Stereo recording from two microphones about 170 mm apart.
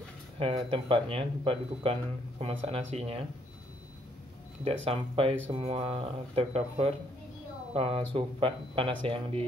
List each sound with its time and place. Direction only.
0.4 s speech: 35° right (ahead or behind)
4.8 s speech: 35° right (ahead or behind)